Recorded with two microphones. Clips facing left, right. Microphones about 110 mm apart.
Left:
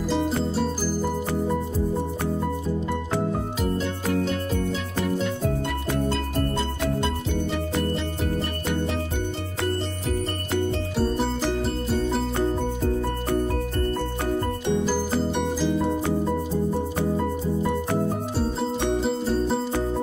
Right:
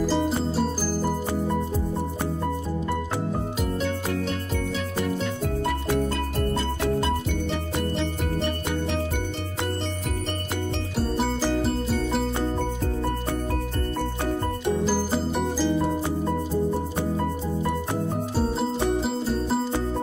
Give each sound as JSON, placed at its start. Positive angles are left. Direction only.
{"t": 0.1, "sound": "music", "side_deg": 0}
{"t": 14.9, "sound": "music", "side_deg": -5}
{"t": 18.9, "sound": "music", "side_deg": 0}